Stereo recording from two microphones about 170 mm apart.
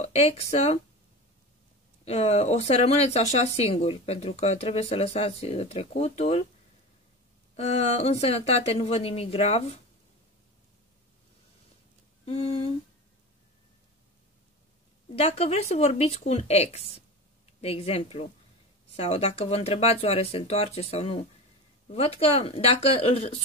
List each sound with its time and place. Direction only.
0.0 s speech: 40° left (ahead or behind)
2.0 s speech: 40° left (ahead or behind)
7.5 s speech: 40° left (ahead or behind)
12.3 s speech: 35° left (ahead or behind)
15.0 s speech: 35° left (ahead or behind)